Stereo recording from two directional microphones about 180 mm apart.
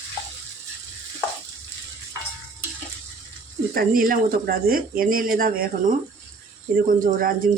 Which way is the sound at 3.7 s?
50° right (ahead or behind).